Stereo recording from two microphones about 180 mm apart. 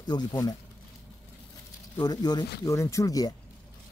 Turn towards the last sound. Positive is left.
turn(degrees=20)  # may be behind; listen again after turning